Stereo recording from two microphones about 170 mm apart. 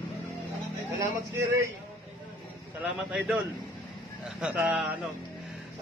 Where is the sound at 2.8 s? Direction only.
5° right (ahead or behind).